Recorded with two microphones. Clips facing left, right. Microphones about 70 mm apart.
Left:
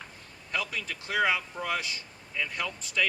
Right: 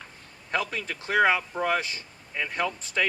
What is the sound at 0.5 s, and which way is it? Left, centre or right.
Speech, right.